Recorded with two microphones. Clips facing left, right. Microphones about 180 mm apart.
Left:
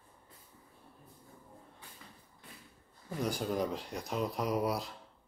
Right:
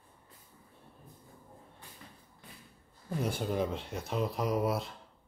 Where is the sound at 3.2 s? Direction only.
Centre (ahead or behind).